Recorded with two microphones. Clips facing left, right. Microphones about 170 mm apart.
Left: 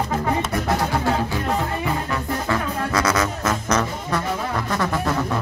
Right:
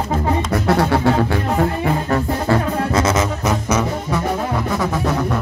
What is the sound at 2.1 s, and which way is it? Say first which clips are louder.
Music: right 6 dB; 35° right (ahead or behind).